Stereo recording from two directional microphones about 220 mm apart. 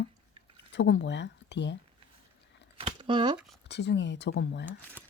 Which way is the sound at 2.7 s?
20° right (ahead or behind).